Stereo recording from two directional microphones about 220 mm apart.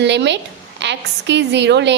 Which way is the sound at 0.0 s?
55° right (ahead or behind).